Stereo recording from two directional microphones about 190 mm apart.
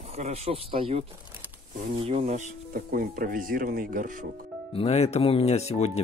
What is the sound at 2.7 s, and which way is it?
Speech, 50° right (ahead or behind).